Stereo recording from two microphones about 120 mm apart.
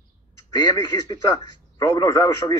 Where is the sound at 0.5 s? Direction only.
40° left (ahead or behind).